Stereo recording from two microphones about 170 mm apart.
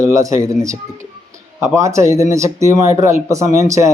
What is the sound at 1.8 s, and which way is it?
Speech, 15° right (ahead or behind).